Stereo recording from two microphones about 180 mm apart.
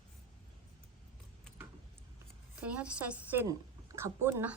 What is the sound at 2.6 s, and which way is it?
A woman's voice, 5° right (ahead or behind).